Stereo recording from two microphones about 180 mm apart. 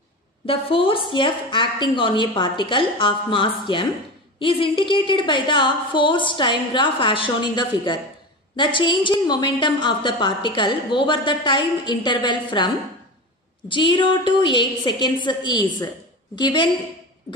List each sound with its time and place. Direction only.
0.5 s a woman's voice: 30° left (ahead or behind)